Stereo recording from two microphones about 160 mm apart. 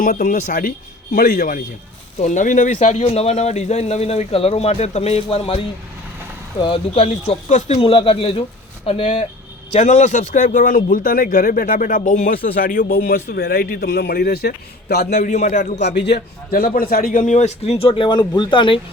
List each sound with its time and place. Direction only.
0.0 s a man's voice: 65° left (ahead or behind)
2.1 s a man's voice: 50° left (ahead or behind)
2.7 s speech: 40° left (ahead or behind)
9.7 s a man's voice: 50° left (ahead or behind); by 15.0 s 85° left
15.1 s a man's voice: 50° left (ahead or behind)
15.8 s a man's voice: 90° left; by 18.8 s 30° left (ahead or behind)